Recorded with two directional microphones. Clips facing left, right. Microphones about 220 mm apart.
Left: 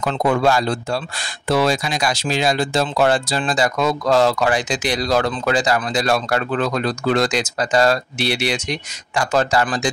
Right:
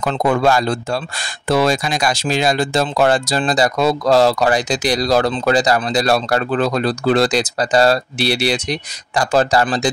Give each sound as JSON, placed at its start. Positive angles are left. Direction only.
{"t": 0.0, "sound": "speech", "side_deg": -45}